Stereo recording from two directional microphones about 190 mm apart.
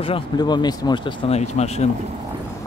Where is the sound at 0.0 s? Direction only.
25° left (ahead or behind).